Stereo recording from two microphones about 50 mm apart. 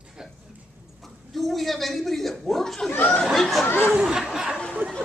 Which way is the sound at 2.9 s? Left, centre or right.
Left.